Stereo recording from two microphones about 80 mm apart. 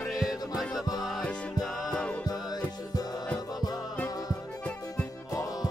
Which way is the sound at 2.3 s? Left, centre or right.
Left.